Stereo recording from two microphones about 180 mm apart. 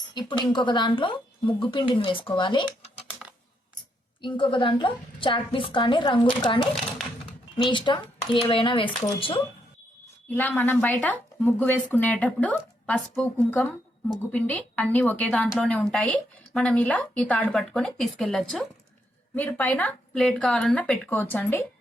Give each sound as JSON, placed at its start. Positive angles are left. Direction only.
{"t": 0.1, "sound": "a woman's voice", "side_deg": 25}
{"t": 2.6, "sound": "computer keyboard", "side_deg": -5}
{"t": 4.2, "sound": "a woman's voice", "side_deg": 25}
{"t": 10.2, "sound": "a woman's voice", "side_deg": 10}